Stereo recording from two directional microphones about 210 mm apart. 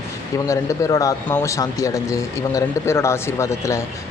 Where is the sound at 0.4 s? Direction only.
15° left (ahead or behind).